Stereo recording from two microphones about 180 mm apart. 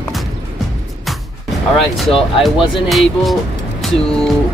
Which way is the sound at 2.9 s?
Centre (ahead or behind).